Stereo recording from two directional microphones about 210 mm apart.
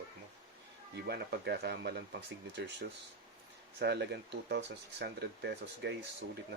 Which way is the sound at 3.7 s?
50° right (ahead or behind).